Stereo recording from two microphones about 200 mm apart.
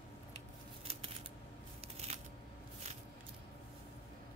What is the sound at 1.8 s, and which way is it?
Scissors, 30° right (ahead or behind).